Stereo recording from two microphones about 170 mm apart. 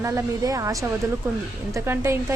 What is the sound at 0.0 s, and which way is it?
Speech, 15° right (ahead or behind).